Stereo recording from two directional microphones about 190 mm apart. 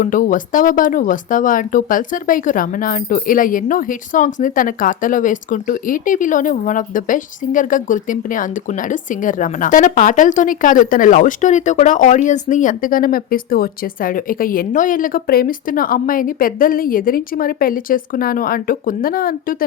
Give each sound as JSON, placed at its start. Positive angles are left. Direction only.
{"t": 0.0, "sound": "speech", "side_deg": 45}